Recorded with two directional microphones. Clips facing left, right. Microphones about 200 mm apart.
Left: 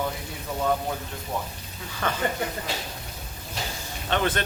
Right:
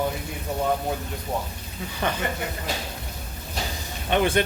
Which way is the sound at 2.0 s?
20° right (ahead or behind).